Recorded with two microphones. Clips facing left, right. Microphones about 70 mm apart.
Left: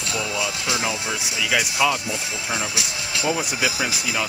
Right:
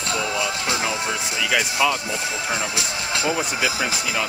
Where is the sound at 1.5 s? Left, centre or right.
Centre.